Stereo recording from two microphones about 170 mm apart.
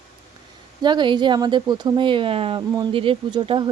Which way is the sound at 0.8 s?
25° right (ahead or behind).